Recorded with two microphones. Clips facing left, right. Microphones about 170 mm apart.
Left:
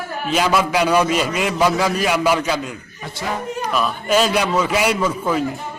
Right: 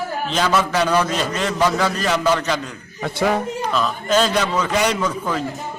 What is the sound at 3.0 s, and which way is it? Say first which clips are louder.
Speech: right 7 dB; 60° right (ahead or behind).